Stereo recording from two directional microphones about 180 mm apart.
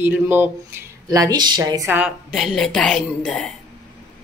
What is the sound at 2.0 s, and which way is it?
A woman's voice, 5° right (ahead or behind).